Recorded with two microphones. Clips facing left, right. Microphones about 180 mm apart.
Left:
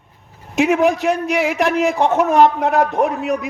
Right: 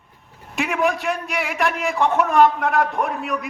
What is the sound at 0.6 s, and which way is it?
A man's voice, 45° left (ahead or behind).